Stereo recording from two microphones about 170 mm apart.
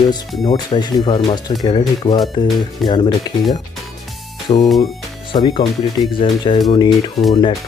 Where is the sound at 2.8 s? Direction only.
Centre (ahead or behind).